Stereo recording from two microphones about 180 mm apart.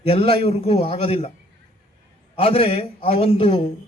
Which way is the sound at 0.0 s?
30° left (ahead or behind).